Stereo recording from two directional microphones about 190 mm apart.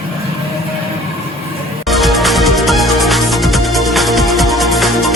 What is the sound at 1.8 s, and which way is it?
Music, centre (ahead or behind).